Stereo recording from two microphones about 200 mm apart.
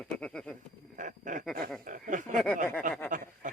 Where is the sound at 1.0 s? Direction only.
40° right (ahead or behind).